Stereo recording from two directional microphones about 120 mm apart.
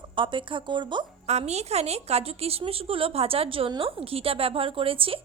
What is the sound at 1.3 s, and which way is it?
A woman's voice, 65° right (ahead or behind).